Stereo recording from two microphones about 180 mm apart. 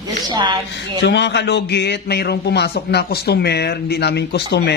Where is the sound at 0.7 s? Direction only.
75° left (ahead or behind).